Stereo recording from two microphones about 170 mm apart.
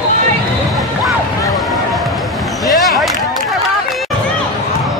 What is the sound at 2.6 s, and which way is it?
Basketball bounce, centre (ahead or behind).